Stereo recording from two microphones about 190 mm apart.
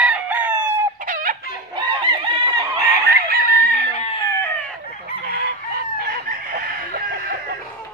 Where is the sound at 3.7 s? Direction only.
40° left (ahead or behind).